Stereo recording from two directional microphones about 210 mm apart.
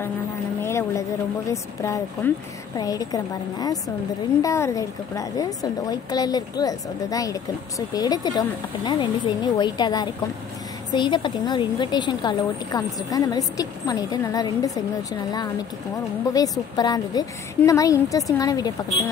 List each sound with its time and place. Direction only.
0.6 s a sound: 10° left (ahead or behind)
1.5 s a woman's voice: 15° left (ahead or behind)
16.3 s a woman's voice: 20° left (ahead or behind)